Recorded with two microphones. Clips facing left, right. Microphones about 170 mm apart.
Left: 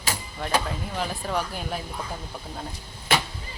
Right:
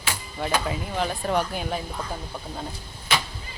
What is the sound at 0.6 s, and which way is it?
Speech, centre (ahead or behind).